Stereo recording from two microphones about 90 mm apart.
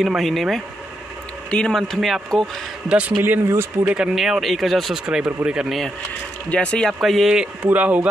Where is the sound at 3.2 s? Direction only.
25° right (ahead or behind).